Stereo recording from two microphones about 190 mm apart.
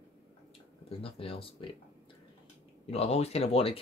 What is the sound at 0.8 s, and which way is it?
Speech, 30° left (ahead or behind).